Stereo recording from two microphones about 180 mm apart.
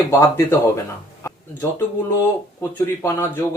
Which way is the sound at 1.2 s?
15° left (ahead or behind).